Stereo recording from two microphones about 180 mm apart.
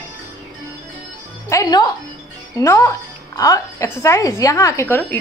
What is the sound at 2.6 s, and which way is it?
Speech, 15° left (ahead or behind).